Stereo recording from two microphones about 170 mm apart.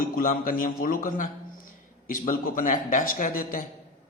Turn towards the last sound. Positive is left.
turn(degrees=50)  # may be behind; listen again after turning